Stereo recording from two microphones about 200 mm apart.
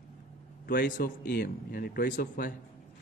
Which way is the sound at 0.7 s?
45° left (ahead or behind).